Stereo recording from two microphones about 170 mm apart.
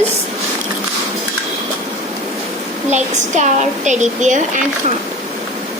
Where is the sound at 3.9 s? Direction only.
45° right (ahead or behind).